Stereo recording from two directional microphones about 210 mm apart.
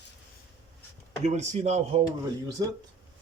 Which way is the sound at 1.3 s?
35° right (ahead or behind).